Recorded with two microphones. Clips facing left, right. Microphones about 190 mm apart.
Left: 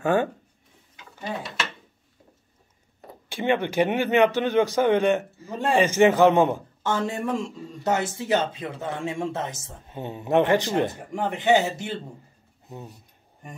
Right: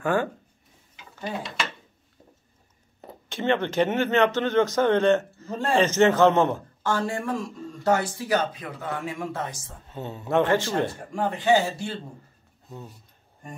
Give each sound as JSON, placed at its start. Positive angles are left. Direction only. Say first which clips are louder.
{"t": 0.0, "sound": "speech", "louder": "left 2 dB", "side_deg": 25}
{"t": 3.3, "sound": "speech", "louder": "left 1 dB", "side_deg": 10}